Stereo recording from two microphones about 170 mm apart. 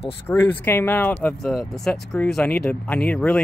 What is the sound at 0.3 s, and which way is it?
Speech, 10° left (ahead or behind).